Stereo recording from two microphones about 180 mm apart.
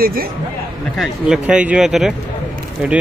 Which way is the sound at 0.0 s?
55° right (ahead or behind).